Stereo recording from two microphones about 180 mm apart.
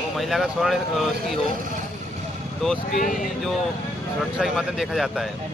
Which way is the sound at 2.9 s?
50° left (ahead or behind).